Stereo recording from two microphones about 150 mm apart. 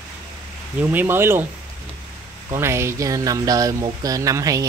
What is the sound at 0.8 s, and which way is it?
Speech, 10° right (ahead or behind).